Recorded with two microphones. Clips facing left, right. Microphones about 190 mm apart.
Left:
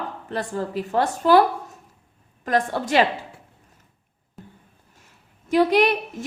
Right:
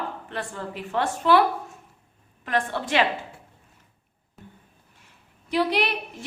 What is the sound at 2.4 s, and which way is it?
Speech, 40° left (ahead or behind).